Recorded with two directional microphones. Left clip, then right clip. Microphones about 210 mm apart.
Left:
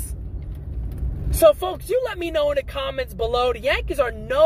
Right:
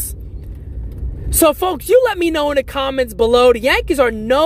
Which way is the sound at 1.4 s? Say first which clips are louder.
Right 2 dB; 55° right (ahead or behind).